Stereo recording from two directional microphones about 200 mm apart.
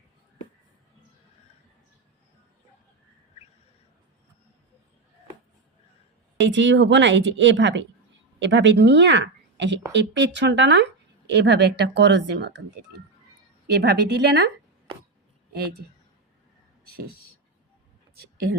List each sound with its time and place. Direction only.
6.4 s a woman's voice: 65° right (ahead or behind)
13.7 s speech: 55° right (ahead or behind)